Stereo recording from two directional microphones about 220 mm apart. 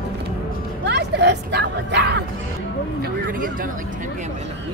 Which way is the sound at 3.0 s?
40° right (ahead or behind).